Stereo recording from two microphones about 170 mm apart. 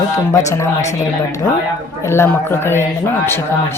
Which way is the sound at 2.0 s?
15° left (ahead or behind).